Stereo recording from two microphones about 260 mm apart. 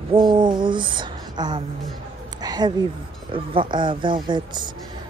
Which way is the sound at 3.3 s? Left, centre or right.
Centre.